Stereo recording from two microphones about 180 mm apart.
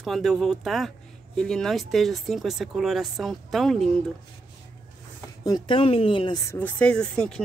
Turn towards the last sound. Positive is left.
turn(degrees=5)  # may be behind; listen again after turning